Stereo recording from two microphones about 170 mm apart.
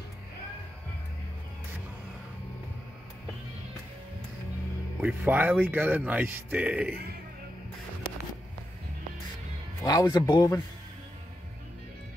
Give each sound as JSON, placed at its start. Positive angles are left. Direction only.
{"t": 5.0, "sound": "speech", "side_deg": -10}
{"t": 9.8, "sound": "speech", "side_deg": 20}